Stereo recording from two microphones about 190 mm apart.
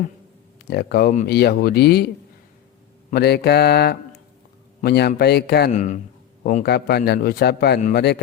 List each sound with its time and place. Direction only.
0.7 s a man's voice: 55° left (ahead or behind)
3.1 s a man's voice: 55° left (ahead or behind)
5.7 s speech: 40° left (ahead or behind)
6.4 s a man's voice: 50° left (ahead or behind)
7.8 s a man's voice: 45° left (ahead or behind)